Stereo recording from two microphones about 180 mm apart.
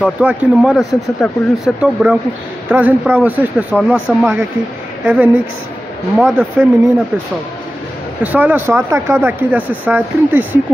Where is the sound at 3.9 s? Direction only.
10° left (ahead or behind).